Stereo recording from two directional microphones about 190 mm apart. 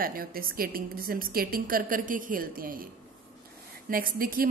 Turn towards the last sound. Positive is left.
turn(degrees=-50)  # may be behind; listen again after turning